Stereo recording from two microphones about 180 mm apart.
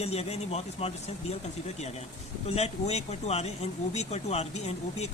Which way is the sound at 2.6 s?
35° left (ahead or behind).